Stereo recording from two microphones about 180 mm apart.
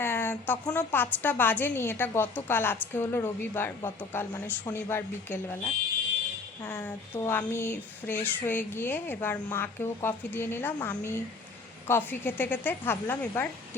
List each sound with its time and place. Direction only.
0.0 s a sound: 10° left (ahead or behind)
0.7 s a woman's voice: 10° left (ahead or behind)
6.7 s a woman's voice: 10° left (ahead or behind)